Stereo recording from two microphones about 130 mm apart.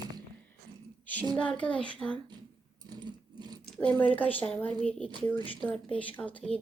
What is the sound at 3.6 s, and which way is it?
Speech, 10° left (ahead or behind).